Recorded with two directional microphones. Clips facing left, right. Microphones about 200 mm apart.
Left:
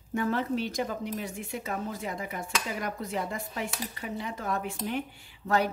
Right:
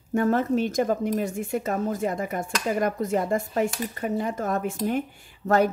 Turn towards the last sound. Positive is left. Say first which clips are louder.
# right 6 dB
turn(degrees=-45)  # may be behind; listen again after turning